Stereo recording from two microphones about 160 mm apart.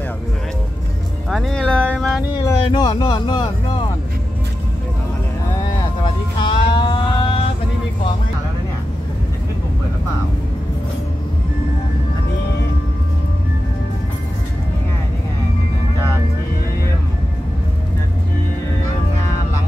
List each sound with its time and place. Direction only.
1.3 s a sound: 5° left (ahead or behind)
2.6 s speech: 30° left (ahead or behind)
6.0 s music: 30° left (ahead or behind)